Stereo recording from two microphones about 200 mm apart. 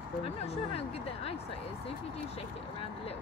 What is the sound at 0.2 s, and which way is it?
Speech, 30° left (ahead or behind).